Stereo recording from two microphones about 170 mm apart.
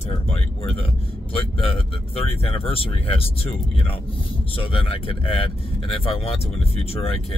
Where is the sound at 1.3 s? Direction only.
35° left (ahead or behind).